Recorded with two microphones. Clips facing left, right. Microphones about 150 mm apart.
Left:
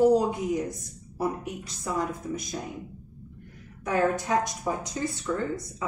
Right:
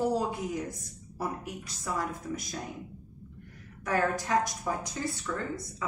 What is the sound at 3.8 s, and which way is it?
A woman's voice, 20° left (ahead or behind).